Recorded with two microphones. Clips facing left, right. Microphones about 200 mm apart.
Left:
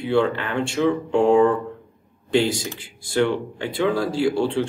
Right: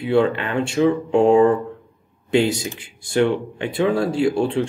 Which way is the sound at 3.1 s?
20° right (ahead or behind).